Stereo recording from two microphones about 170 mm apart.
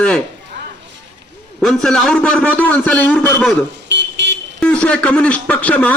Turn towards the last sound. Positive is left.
turn(degrees=10)  # may be behind; listen again after turning